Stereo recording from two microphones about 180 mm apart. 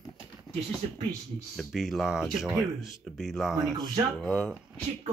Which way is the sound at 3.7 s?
20° right (ahead or behind).